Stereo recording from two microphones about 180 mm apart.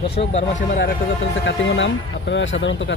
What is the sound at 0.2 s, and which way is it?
Speech, 50° left (ahead or behind).